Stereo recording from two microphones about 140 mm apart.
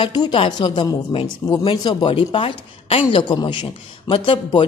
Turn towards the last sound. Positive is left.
turn(degrees=40)  # may be behind; listen again after turning